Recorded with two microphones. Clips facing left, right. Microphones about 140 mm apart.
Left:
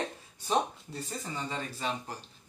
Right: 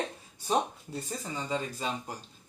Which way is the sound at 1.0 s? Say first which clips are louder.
Right 1 dB; 15° right (ahead or behind).